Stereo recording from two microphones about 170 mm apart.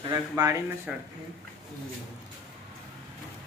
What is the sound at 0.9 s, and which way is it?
Speech, 5° right (ahead or behind).